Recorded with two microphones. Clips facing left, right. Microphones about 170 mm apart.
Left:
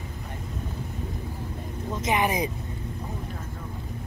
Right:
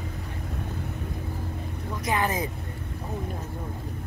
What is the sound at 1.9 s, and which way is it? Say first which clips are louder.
Speech: left 2 dB; 20° left (ahead or behind).